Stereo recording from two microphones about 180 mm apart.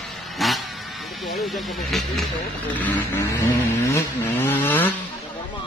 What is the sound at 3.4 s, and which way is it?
Vehicle, 10° left (ahead or behind).